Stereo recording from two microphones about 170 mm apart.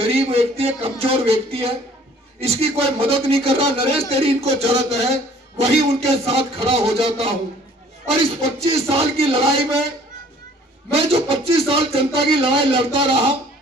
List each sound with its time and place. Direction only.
0.0 s speech: 35° right (ahead or behind)
8.6 s speech: 35° right (ahead or behind)
10.9 s speech: 35° right (ahead or behind)